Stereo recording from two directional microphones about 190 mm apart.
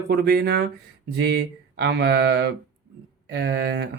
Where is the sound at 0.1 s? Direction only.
55° right (ahead or behind).